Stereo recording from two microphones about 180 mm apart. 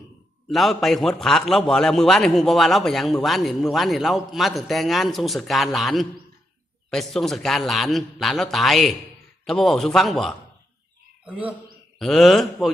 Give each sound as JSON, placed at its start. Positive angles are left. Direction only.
{"t": 0.5, "sound": "a man's voice", "side_deg": 0}